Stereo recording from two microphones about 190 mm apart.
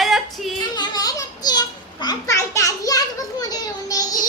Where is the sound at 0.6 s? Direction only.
20° left (ahead or behind).